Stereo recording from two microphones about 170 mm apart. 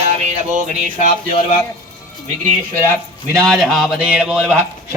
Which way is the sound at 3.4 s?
Centre (ahead or behind).